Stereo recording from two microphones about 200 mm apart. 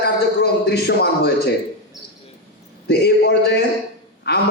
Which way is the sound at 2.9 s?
55° left (ahead or behind).